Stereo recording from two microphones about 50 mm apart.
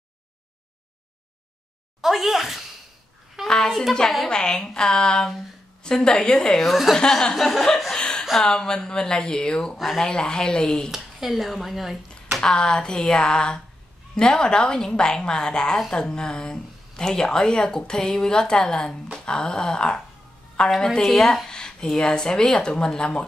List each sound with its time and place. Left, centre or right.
2.0 s speech: centre
3.4 s speech: centre
6.6 s speech: centre
7.0 s speech: centre
8.0 s a sound: centre
8.4 s speech: centre
10.9 s speech: centre
12.4 s speech: centre